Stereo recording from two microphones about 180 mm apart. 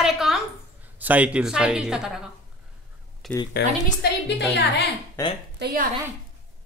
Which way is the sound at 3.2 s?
Centre (ahead or behind).